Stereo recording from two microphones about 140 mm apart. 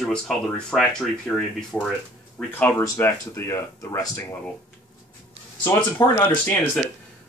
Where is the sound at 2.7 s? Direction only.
20° left (ahead or behind).